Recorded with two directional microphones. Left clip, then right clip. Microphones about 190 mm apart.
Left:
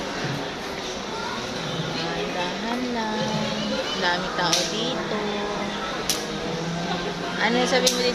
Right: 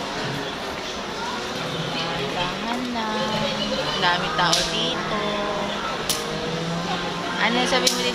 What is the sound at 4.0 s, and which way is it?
Speech, 15° left (ahead or behind).